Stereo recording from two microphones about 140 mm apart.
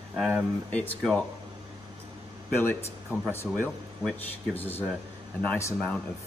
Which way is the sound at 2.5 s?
15° left (ahead or behind).